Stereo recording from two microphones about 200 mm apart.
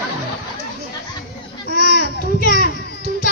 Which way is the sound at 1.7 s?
50° left (ahead or behind).